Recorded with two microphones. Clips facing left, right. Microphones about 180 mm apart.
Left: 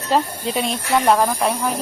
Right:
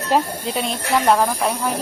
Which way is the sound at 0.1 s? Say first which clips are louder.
Even; 15° right (ahead or behind).